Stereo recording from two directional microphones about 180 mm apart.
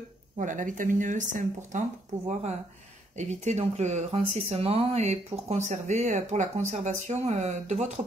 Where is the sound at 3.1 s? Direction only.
40° right (ahead or behind).